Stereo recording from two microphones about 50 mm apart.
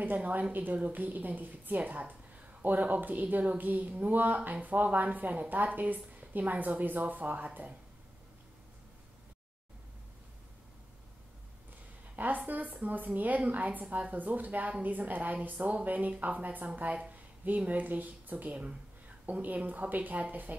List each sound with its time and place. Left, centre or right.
0.0 s a woman's voice: right
12.2 s a woman's voice: right